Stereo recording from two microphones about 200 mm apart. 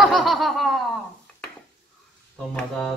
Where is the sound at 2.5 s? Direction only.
5° left (ahead or behind).